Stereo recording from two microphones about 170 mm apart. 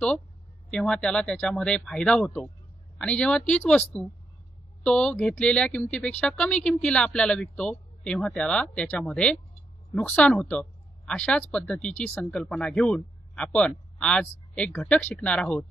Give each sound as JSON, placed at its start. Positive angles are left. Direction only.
{"t": 0.7, "sound": "speech", "side_deg": 5}